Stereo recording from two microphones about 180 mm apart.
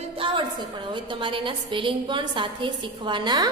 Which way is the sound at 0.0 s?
30° right (ahead or behind).